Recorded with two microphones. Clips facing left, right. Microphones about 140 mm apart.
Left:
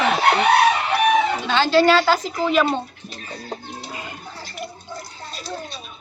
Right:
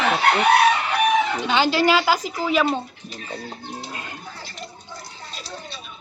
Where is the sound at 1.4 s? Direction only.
15° right (ahead or behind).